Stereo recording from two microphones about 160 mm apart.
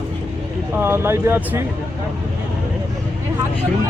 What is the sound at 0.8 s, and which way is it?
Speech, 15° right (ahead or behind).